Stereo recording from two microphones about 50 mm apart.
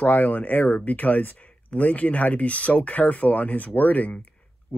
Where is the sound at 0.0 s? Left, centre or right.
Left.